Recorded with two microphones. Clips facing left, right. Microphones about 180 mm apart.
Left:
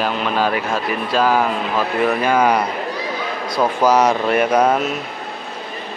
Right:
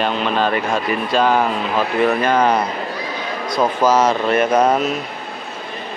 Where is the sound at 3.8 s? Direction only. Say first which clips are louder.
Left 1 dB; 15° left (ahead or behind).